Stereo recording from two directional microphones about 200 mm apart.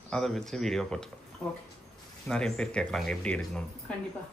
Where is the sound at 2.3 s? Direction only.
5° left (ahead or behind).